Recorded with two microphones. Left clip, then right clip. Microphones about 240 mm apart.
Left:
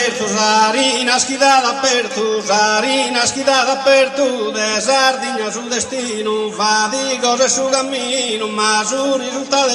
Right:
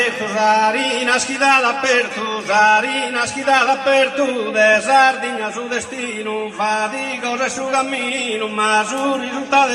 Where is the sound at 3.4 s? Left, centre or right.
Left.